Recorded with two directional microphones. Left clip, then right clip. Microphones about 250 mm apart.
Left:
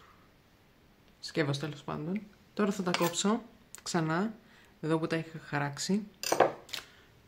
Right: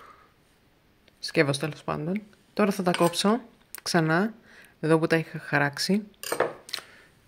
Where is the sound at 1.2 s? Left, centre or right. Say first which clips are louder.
Right 8 dB; right.